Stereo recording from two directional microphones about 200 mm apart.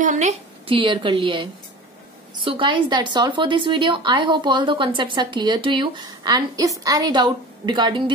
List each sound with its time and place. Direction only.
0.0 s a woman's voice: 40° right (ahead or behind)
0.7 s speech: 25° right (ahead or behind)